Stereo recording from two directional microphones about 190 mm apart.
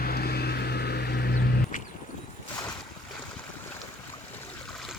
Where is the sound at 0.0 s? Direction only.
55° left (ahead or behind).